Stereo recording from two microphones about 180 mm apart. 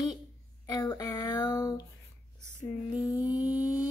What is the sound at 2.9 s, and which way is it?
Speech, 5° right (ahead or behind).